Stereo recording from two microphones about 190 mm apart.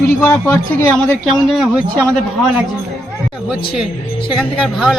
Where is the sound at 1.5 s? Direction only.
5° right (ahead or behind).